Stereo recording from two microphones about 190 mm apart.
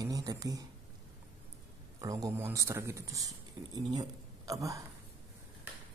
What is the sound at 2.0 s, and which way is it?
Speech, 20° right (ahead or behind).